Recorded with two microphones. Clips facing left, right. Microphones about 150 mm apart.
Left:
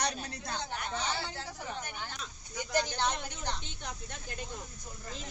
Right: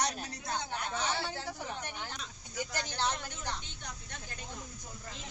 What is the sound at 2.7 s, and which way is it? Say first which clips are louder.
Speech: left 5 dB; 15° left (ahead or behind).